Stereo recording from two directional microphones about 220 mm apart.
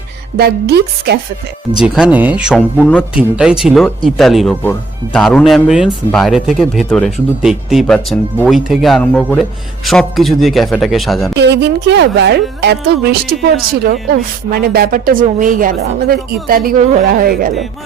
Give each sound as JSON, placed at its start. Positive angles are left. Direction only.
{"t": 0.3, "sound": "speech", "side_deg": -45}
{"t": 1.8, "sound": "speech", "side_deg": -5}
{"t": 11.3, "sound": "speech", "side_deg": -50}